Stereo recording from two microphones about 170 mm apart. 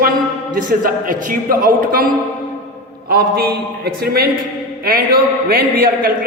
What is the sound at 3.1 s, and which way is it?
A man's voice, 60° right (ahead or behind).